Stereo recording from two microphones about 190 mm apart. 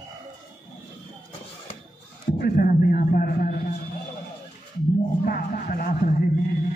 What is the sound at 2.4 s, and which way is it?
A man's voice, 50° left (ahead or behind).